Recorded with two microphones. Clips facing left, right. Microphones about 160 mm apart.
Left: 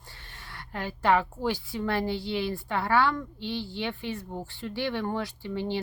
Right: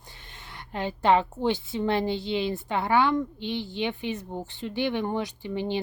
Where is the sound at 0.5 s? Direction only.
20° right (ahead or behind).